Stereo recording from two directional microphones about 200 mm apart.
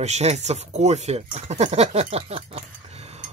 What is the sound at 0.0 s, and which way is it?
Speech, 35° right (ahead or behind).